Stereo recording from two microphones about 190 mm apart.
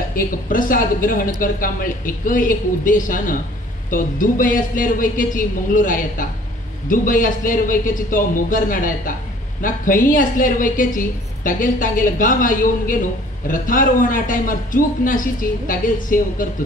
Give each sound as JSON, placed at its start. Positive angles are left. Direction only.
{"t": 0.1, "sound": "a woman's voice", "side_deg": 45}